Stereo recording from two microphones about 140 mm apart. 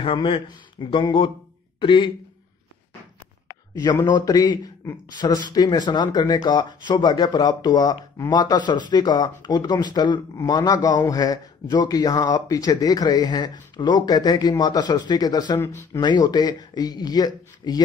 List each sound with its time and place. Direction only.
0.0 s speech: 35° left (ahead or behind)
3.7 s a man's voice: 25° left (ahead or behind)
15.6 s a man's voice: 20° left (ahead or behind)
16.0 s a man's voice: 30° left (ahead or behind)